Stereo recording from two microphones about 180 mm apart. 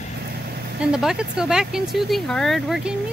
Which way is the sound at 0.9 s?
5° right (ahead or behind).